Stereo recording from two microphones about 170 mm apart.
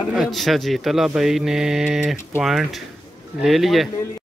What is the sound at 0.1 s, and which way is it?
Speech, centre (ahead or behind).